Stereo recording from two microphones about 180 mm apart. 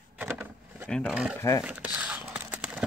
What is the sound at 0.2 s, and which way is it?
Vehicle, 10° right (ahead or behind).